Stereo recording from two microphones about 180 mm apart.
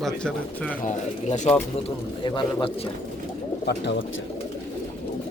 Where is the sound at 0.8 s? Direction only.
40° left (ahead or behind).